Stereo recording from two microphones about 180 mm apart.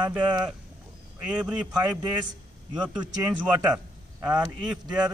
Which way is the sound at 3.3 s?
5° right (ahead or behind).